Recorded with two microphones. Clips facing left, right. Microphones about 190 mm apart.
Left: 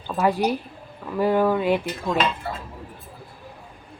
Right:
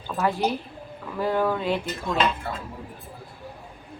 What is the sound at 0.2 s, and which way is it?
Speech, 10° left (ahead or behind).